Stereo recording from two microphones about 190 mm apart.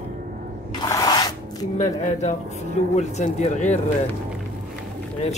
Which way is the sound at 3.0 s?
35° left (ahead or behind).